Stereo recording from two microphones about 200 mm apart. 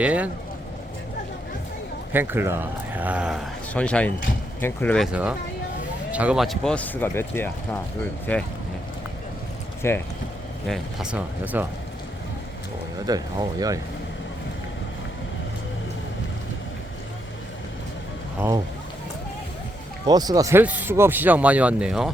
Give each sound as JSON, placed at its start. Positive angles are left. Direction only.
{"t": 0.0, "sound": "speech", "side_deg": -5}
{"t": 2.1, "sound": "speech", "side_deg": -10}
{"t": 6.1, "sound": "speech", "side_deg": -5}
{"t": 9.8, "sound": "speech", "side_deg": 10}
{"t": 10.7, "sound": "speech", "side_deg": -5}
{"t": 13.1, "sound": "speech", "side_deg": -20}
{"t": 20.1, "sound": "speech", "side_deg": -20}